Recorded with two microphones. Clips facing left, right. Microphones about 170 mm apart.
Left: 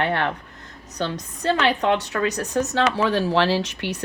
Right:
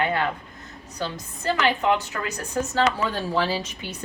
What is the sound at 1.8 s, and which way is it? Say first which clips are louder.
Speech: left 2 dB; 75° left (ahead or behind).